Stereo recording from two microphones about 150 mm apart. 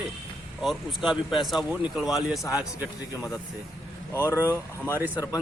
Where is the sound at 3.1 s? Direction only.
20° left (ahead or behind).